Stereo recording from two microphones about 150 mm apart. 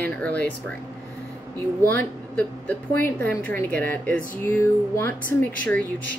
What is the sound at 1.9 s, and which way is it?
Speech, 15° left (ahead or behind).